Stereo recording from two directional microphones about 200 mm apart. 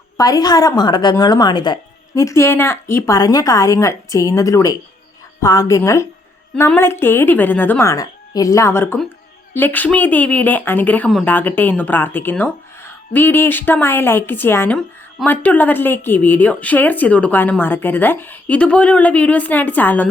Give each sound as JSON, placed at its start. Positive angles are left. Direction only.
{"t": 0.2, "sound": "a woman's voice", "side_deg": 20}